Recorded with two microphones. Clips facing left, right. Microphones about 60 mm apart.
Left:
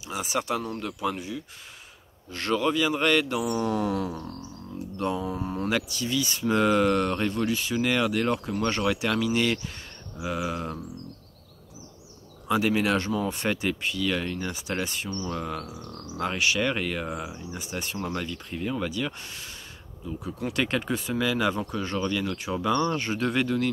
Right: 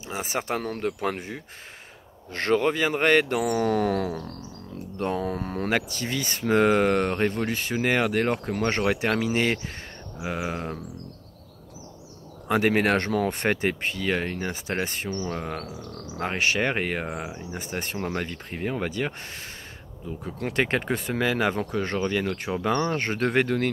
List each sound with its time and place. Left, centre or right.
0.0 s speech: right
3.4 s speech: right
5.8 s speech: right
12.4 s speech: right
13.3 s speech: right
22.5 s speech: right
22.8 s speech: right